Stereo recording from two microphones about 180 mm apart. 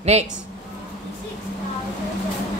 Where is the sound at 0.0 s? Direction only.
35° right (ahead or behind).